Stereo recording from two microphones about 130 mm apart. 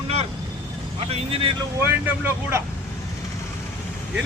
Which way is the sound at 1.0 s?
50° right (ahead or behind).